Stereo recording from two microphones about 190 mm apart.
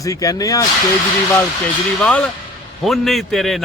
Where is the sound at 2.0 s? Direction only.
Centre (ahead or behind).